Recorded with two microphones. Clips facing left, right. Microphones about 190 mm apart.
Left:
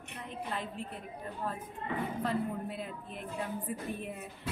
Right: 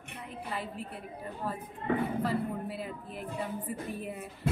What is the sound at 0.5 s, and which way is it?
Speech, 5° right (ahead or behind).